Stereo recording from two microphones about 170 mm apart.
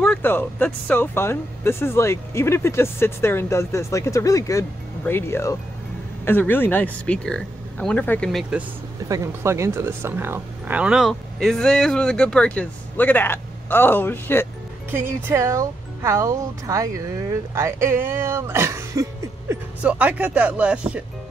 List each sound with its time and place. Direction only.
0.0 s speech: 10° left (ahead or behind)
9.1 s speech: 15° right (ahead or behind); by 14.5 s 15° left (ahead or behind)
14.9 s speech: 15° right (ahead or behind)